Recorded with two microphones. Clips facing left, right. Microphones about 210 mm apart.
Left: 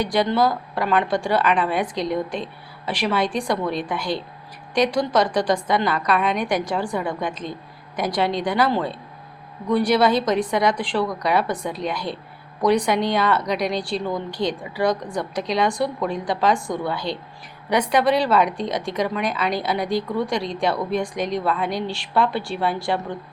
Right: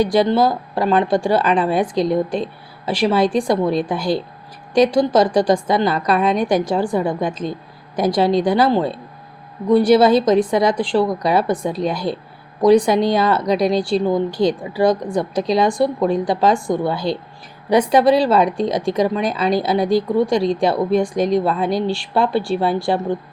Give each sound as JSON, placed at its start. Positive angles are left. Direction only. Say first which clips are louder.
{"t": 0.1, "sound": "speech", "louder": "right 4 dB", "side_deg": -30}